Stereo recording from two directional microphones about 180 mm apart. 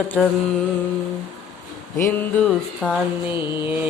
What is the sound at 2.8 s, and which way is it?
Music, 5° left (ahead or behind).